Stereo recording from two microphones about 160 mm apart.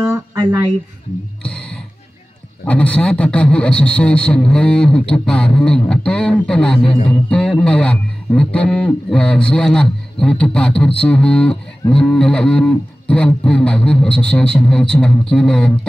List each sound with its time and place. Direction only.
0.0 s a sound: 20° right (ahead or behind)
1.4 s music: 5° left (ahead or behind)
2.6 s a man's voice: 10° left (ahead or behind)
6.8 s a man's voice: 35° left (ahead or behind)
7.1 s a man's voice: 5° left (ahead or behind)